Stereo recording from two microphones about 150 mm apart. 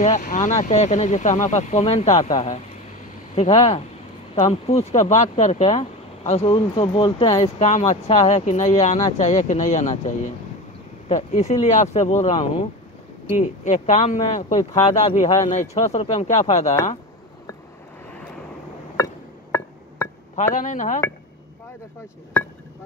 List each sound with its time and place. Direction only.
0.2 s speech: 55° left (ahead or behind); by 7.5 s 25° left (ahead or behind)
7.5 s speech: 55° left (ahead or behind)
20.5 s speech: 60° left (ahead or behind)